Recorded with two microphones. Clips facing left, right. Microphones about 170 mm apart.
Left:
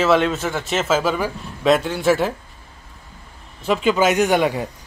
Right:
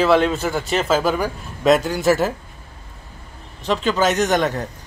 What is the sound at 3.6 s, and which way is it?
Speech, 10° left (ahead or behind).